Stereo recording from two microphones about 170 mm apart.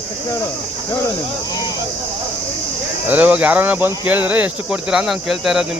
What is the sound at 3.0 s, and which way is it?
Speech, 10° right (ahead or behind).